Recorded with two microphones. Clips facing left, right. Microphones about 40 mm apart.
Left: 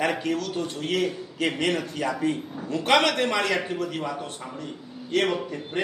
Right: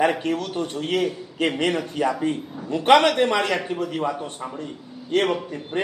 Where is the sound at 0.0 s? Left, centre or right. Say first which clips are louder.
Right 4 dB; right.